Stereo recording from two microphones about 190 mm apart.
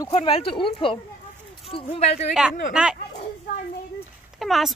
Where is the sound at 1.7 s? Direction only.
30° left (ahead or behind).